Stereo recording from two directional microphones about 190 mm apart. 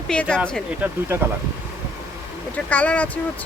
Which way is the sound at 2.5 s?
10° left (ahead or behind).